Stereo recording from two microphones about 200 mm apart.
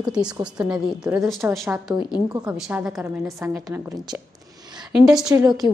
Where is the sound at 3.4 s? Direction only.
15° right (ahead or behind).